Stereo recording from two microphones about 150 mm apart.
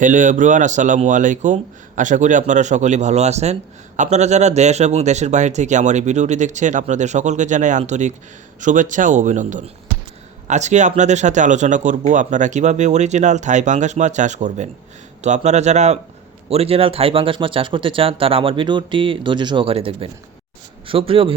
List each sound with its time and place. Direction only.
0.0 s speech: 60° right (ahead or behind); by 21.3 s 35° right (ahead or behind)